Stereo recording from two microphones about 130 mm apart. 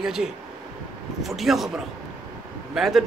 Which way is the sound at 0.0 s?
5° right (ahead or behind).